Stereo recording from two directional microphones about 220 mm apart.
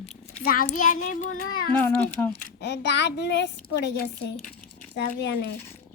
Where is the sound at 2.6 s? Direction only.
50° left (ahead or behind).